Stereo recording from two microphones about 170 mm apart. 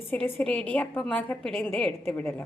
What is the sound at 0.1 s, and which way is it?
A woman's voice, 5° left (ahead or behind).